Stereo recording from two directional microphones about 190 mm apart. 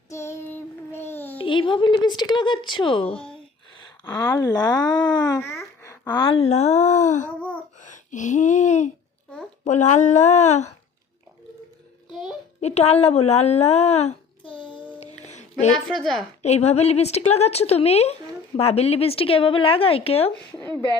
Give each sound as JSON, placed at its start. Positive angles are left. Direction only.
{"t": 0.1, "sound": "child singing", "side_deg": 15}
{"t": 1.4, "sound": "speech", "side_deg": 25}
{"t": 7.8, "sound": "gasp", "side_deg": 40}
{"t": 9.6, "sound": "a woman's voice", "side_deg": 40}
{"t": 12.5, "sound": "speech", "side_deg": 35}
{"t": 15.0, "sound": "music", "side_deg": 35}
{"t": 15.9, "sound": "speech", "side_deg": 0}
{"t": 16.4, "sound": "a woman's voice", "side_deg": 35}